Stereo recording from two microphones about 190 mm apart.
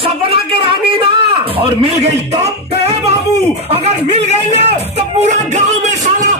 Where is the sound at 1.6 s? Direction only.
30° right (ahead or behind).